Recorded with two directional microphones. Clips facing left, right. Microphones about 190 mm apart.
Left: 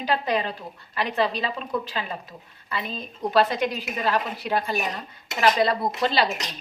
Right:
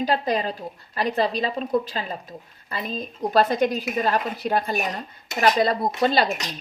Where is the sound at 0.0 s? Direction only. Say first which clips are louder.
Right 2 dB; 40° right (ahead or behind).